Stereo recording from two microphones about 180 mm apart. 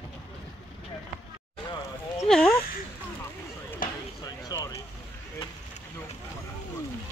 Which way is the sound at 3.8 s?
50° left (ahead or behind).